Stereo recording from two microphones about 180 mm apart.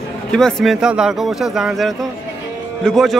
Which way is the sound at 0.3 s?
5° left (ahead or behind).